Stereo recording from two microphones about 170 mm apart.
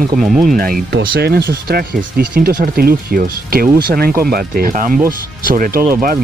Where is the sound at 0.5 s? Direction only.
60° right (ahead or behind).